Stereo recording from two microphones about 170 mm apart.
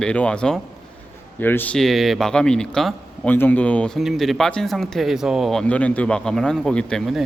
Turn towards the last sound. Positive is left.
turn(degrees=0)  # may be behind; listen again after turning